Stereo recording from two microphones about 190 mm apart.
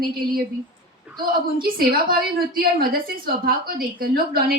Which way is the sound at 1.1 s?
5° right (ahead or behind).